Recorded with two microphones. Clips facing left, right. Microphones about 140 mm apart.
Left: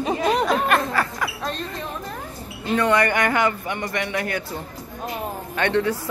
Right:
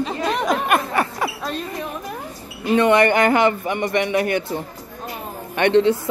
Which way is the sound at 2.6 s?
20° right (ahead or behind).